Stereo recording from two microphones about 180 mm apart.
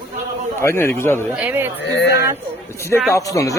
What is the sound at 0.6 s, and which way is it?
Speech, 15° left (ahead or behind).